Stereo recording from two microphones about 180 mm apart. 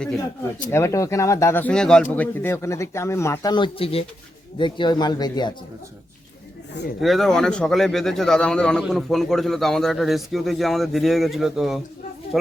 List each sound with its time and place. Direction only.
0.7 s speech: 15° left (ahead or behind)
7.0 s a man's voice: centre (ahead or behind)